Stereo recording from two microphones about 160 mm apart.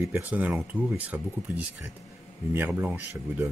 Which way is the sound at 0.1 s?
10° right (ahead or behind).